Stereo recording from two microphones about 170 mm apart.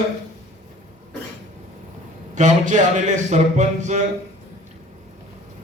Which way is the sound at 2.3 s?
45° right (ahead or behind).